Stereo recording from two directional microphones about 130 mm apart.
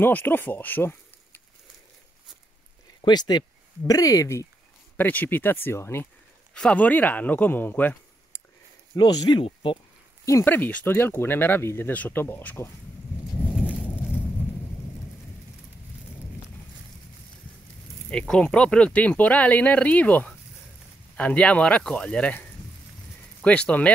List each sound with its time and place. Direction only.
0.0 s speech: 15° left (ahead or behind)
3.0 s speech: 30° left (ahead or behind)
4.9 s speech: 15° left (ahead or behind)
8.9 s speech: 30° left (ahead or behind)
10.2 s speech: 20° left (ahead or behind)
18.1 s speech: 5° left (ahead or behind)